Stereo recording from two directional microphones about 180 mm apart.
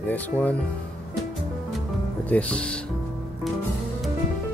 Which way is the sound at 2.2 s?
5° left (ahead or behind).